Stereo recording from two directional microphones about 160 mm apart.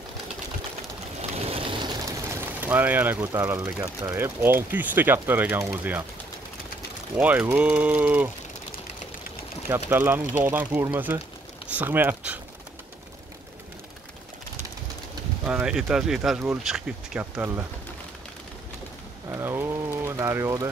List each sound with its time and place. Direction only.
1.3 s a sound: 40° right (ahead or behind)
2.6 s speech: 10° right (ahead or behind)
7.2 s speech: 10° right (ahead or behind)
9.7 s speech: 15° right (ahead or behind)
15.4 s speech: 5° right (ahead or behind)
19.3 s speech: 15° right (ahead or behind)